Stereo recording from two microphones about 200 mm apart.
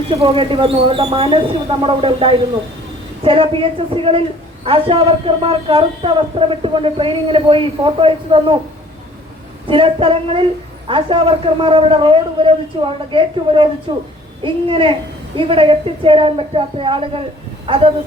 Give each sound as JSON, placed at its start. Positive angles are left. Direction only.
{"t": 0.1, "sound": "a woman's voice", "side_deg": -30}
{"t": 9.6, "sound": "a woman's voice", "side_deg": -25}